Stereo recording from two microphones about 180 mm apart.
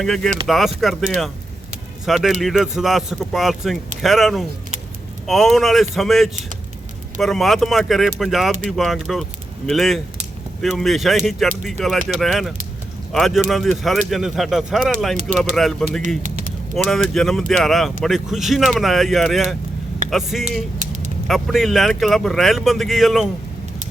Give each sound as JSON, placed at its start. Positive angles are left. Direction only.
{"t": 0.0, "sound": "speech", "side_deg": 0}
{"t": 15.3, "sound": "speech", "side_deg": -40}
{"t": 16.7, "sound": "speech", "side_deg": 0}